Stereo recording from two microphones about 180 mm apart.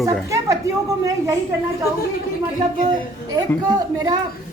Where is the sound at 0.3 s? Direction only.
20° right (ahead or behind).